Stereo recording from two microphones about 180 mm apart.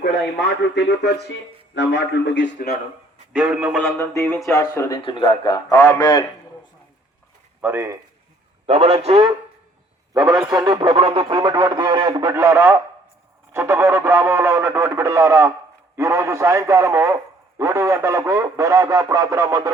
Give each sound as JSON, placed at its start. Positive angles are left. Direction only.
{"t": 0.0, "sound": "a man's voice", "side_deg": 80}
{"t": 1.7, "sound": "a man's voice", "side_deg": 80}
{"t": 3.4, "sound": "a man's voice", "side_deg": -5}
{"t": 3.8, "sound": "speech", "side_deg": 15}
{"t": 5.0, "sound": "speech", "side_deg": 25}
{"t": 7.6, "sound": "speech", "side_deg": -15}
{"t": 8.6, "sound": "a man's voice", "side_deg": -35}
{"t": 10.2, "sound": "speech", "side_deg": -20}